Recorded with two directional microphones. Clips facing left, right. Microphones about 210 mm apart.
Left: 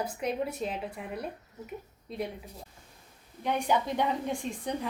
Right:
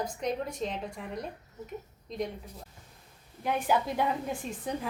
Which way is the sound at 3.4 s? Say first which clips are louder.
Even; 5° right (ahead or behind).